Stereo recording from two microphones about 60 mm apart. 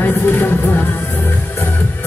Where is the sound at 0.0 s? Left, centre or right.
Left.